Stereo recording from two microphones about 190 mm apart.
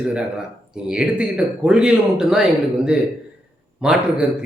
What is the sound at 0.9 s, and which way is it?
A man's voice, 5° right (ahead or behind).